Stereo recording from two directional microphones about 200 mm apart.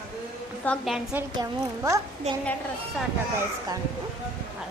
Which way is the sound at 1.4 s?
15° right (ahead or behind).